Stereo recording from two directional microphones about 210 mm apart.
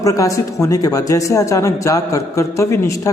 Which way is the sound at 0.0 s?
15° left (ahead or behind).